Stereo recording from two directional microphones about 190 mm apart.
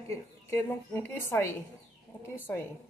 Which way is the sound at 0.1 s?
10° left (ahead or behind).